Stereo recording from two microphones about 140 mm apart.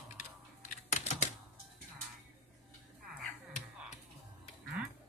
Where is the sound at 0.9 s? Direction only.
55° left (ahead or behind).